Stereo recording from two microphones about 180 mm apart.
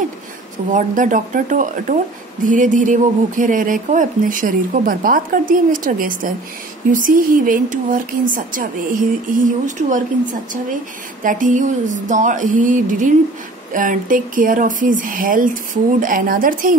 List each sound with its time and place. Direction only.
0.7 s speech: 45° right (ahead or behind)
11.2 s speech: 45° right (ahead or behind)